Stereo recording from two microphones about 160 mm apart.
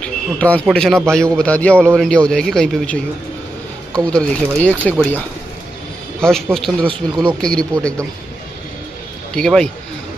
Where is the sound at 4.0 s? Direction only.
5° left (ahead or behind).